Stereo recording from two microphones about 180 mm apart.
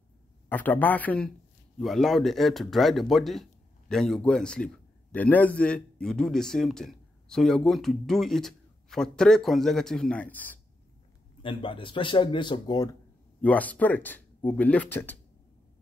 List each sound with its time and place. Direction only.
0.5 s a man's voice: 10° left (ahead or behind)
11.4 s speech: 30° left (ahead or behind)
13.4 s speech: 10° left (ahead or behind)